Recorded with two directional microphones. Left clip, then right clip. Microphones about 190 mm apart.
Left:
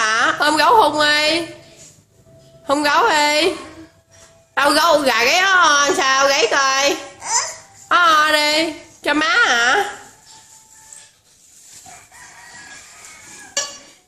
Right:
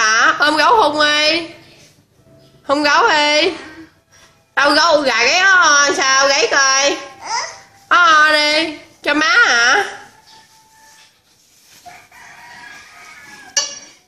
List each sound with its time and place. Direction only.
0.0 s a woman's voice: 5° left (ahead or behind)
2.6 s a woman's voice: 5° left (ahead or behind)
4.6 s a woman's voice: 5° left (ahead or behind)
7.2 s babbling: 25° left (ahead or behind)
7.9 s a woman's voice: 5° left (ahead or behind)